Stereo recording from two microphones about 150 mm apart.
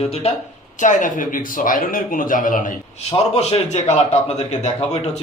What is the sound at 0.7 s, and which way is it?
A man's voice, 55° left (ahead or behind).